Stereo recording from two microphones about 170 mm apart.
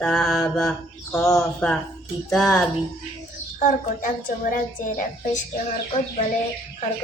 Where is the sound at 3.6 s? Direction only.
55° left (ahead or behind).